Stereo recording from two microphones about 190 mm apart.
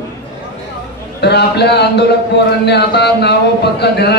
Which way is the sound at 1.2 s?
60° left (ahead or behind).